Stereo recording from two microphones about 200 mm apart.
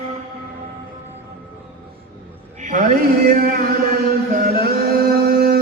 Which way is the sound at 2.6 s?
40° right (ahead or behind).